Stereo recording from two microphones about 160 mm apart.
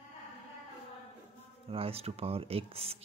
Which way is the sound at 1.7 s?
35° right (ahead or behind).